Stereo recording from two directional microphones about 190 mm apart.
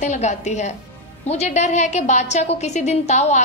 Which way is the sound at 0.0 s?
40° left (ahead or behind).